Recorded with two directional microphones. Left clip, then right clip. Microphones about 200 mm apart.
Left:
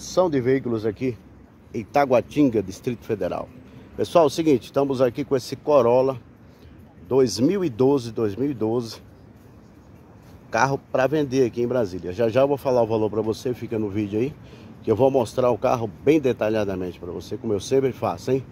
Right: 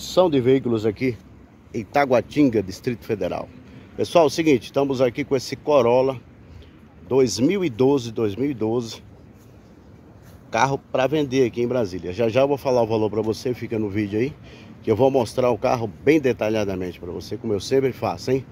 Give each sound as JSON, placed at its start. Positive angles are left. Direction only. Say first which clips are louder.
{"t": 0.2, "sound": "speech", "louder": "right 3 dB", "side_deg": -15}
{"t": 1.7, "sound": "speech", "louder": "even", "side_deg": 0}
{"t": 10.5, "sound": "speech", "louder": "right 1 dB", "side_deg": 0}